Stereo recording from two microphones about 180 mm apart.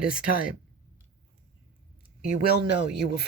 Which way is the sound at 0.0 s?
50° left (ahead or behind).